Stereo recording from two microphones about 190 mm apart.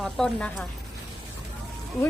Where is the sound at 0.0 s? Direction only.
5° left (ahead or behind).